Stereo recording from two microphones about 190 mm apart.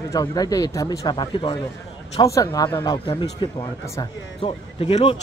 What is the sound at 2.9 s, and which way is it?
Speech, 25° left (ahead or behind).